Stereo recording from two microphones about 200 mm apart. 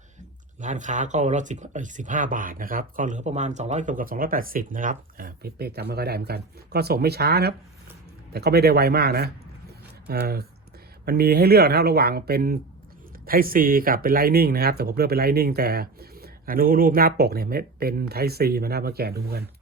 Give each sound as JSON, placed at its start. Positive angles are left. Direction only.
{"t": 0.6, "sound": "speech", "side_deg": -40}